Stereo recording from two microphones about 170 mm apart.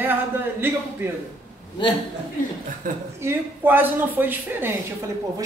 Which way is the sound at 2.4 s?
55° left (ahead or behind).